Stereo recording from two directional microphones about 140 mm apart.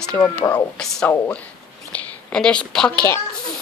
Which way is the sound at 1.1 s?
15° left (ahead or behind).